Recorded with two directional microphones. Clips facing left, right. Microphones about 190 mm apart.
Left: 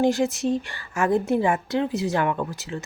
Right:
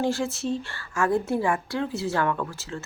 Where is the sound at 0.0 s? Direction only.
20° left (ahead or behind).